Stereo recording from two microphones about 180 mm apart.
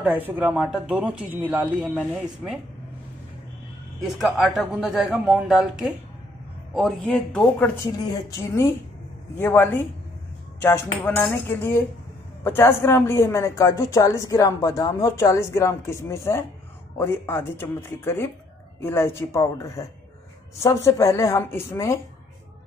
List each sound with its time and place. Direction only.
0.0 s speech: 10° right (ahead or behind)
4.2 s a woman's voice: centre (ahead or behind); by 22.0 s 15° left (ahead or behind)